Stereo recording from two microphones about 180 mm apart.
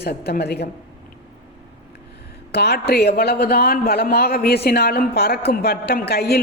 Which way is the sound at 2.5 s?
65° left (ahead or behind).